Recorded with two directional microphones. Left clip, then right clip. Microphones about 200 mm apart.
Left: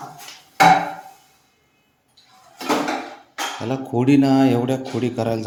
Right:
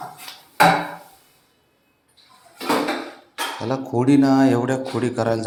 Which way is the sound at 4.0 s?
15° left (ahead or behind).